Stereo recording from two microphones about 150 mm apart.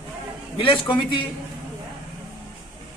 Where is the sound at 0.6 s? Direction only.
35° left (ahead or behind).